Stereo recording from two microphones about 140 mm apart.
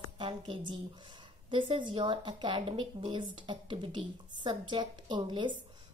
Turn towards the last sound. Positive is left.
turn(degrees=-35)  # may be behind; listen again after turning